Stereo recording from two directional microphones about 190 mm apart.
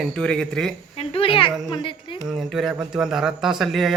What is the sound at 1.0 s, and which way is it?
Speech, 30° left (ahead or behind).